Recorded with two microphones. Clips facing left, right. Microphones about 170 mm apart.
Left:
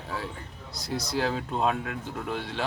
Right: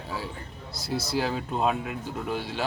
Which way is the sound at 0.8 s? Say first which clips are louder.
Right 1 dB; 5° right (ahead or behind).